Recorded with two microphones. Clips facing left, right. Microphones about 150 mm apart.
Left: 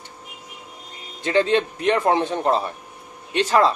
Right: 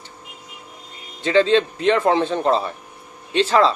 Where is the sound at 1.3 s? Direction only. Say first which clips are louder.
Right 3 dB; 15° left (ahead or behind).